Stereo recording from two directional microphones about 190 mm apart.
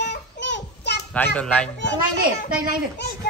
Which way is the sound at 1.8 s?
65° left (ahead or behind).